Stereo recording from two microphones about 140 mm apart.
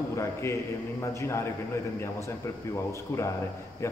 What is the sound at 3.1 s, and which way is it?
Speech, 20° left (ahead or behind).